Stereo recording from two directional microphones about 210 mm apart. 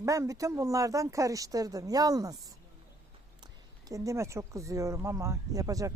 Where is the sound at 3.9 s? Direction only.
15° right (ahead or behind).